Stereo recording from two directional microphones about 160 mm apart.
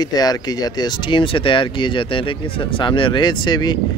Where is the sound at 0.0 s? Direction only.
25° left (ahead or behind).